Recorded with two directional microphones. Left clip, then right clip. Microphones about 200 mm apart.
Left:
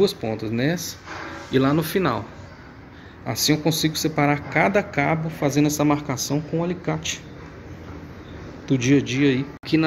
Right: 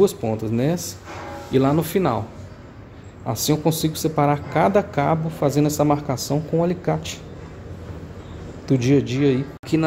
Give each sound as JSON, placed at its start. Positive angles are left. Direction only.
{"t": 0.0, "sound": "speech", "side_deg": -5}
{"t": 3.3, "sound": "speech", "side_deg": 0}
{"t": 8.6, "sound": "speech", "side_deg": -5}